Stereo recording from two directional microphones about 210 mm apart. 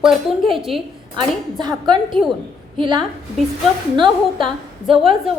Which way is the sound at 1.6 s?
20° right (ahead or behind).